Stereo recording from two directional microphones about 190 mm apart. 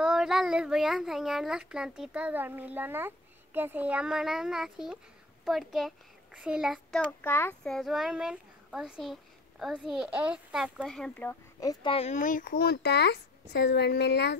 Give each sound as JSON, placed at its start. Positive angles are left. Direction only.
{"t": 0.0, "sound": "a child's voice", "side_deg": -5}
{"t": 11.7, "sound": "speech", "side_deg": 25}